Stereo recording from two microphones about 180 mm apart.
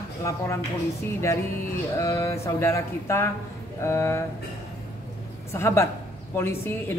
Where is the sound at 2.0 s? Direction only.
20° left (ahead or behind).